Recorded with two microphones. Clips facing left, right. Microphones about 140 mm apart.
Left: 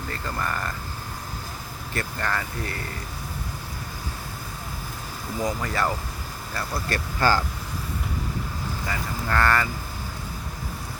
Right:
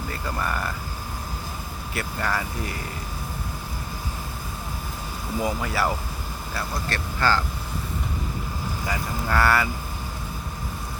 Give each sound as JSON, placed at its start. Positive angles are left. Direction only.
{"t": 0.1, "sound": "speech", "side_deg": -10}
{"t": 1.9, "sound": "speech", "side_deg": -10}
{"t": 5.4, "sound": "speech", "side_deg": -10}
{"t": 6.9, "sound": "speech", "side_deg": 15}
{"t": 8.9, "sound": "speech", "side_deg": -10}